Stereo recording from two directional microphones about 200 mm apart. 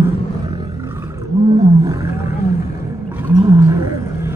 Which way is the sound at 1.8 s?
15° right (ahead or behind).